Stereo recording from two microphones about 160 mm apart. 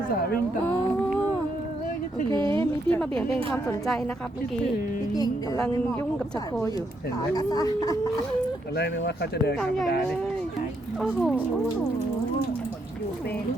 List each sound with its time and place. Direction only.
2.9 s speech: 5° left (ahead or behind)
7.3 s a woman's voice: 25° left (ahead or behind)
8.7 s speech: 90° left
9.6 s speech: centre (ahead or behind)
11.0 s speech: centre (ahead or behind)